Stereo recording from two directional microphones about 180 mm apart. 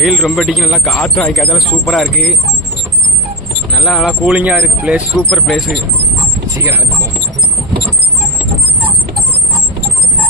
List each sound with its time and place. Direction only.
0.0 s speech: centre (ahead or behind)
3.8 s speech: centre (ahead or behind)
6.6 s speech: 15° right (ahead or behind)